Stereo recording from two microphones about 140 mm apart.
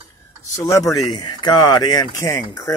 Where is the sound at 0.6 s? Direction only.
25° left (ahead or behind).